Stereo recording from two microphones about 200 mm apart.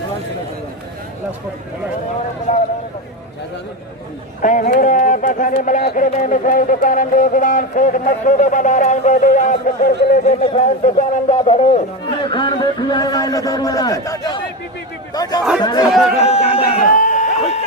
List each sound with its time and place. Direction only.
4.4 s a man's voice: 40° left (ahead or behind); by 15.4 s 20° left (ahead or behind)
15.8 s speech: centre (ahead or behind)
16.1 s speech: 30° left (ahead or behind)
16.8 s a sound: 45° left (ahead or behind)